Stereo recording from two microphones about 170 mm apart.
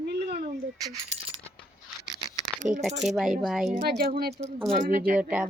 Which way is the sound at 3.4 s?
Centre (ahead or behind).